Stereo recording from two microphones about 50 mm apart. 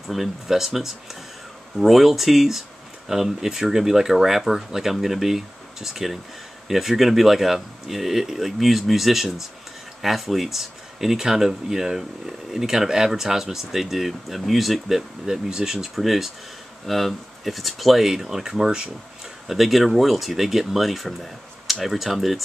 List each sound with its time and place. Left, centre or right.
0.1 s speech: centre